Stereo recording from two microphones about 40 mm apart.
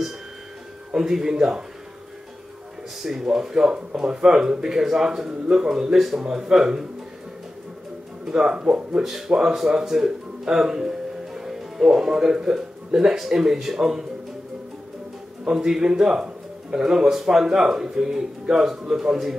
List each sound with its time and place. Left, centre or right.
0.9 s speech: centre
3.0 s speech: centre
8.3 s speech: right
9.5 s speech: centre
15.4 s speech: centre